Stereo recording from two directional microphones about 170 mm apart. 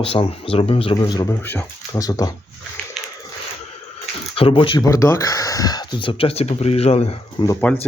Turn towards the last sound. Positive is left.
turn(degrees=10)  # may be behind; listen again after turning